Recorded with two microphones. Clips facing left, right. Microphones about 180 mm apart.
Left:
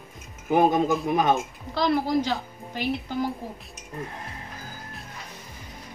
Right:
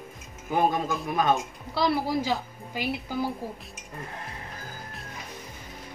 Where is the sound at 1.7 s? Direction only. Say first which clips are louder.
Left 2 dB; 5° right (ahead or behind).